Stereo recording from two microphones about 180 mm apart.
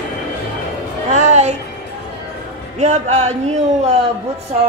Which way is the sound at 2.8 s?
40° right (ahead or behind).